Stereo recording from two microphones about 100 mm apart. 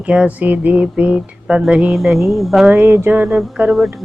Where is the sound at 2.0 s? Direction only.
Centre (ahead or behind).